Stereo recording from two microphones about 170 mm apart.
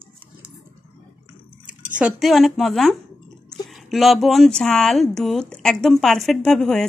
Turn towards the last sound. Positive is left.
turn(degrees=0)  # may be behind; listen again after turning